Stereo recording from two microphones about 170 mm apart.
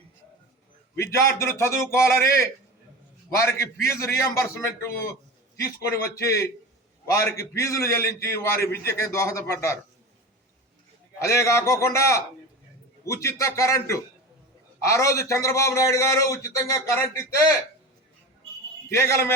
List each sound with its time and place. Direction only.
0.9 s a man's voice: 15° left (ahead or behind)
5.5 s a man's voice: 20° left (ahead or behind)
11.3 s a man's voice: 15° left (ahead or behind)
18.9 s a man's voice: 15° left (ahead or behind)